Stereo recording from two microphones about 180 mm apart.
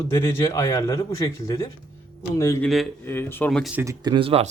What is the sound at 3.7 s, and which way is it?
Speech, 15° right (ahead or behind).